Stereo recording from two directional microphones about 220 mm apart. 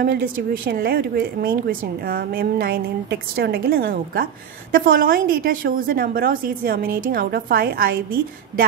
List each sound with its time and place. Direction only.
0.7 s a woman's voice: 40° right (ahead or behind)